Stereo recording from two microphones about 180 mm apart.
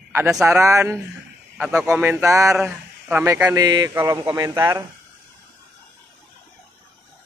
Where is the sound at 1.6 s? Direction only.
5° right (ahead or behind).